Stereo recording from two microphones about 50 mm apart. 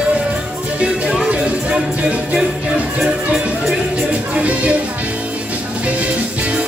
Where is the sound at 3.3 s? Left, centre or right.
Centre.